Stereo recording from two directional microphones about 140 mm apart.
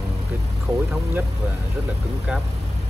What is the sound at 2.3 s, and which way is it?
Speech, 10° right (ahead or behind).